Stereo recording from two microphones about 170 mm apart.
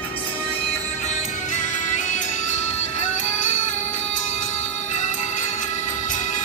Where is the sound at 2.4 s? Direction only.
45° left (ahead or behind).